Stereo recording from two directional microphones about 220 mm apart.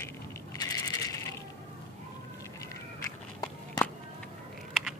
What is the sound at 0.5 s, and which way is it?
Coin, 15° left (ahead or behind).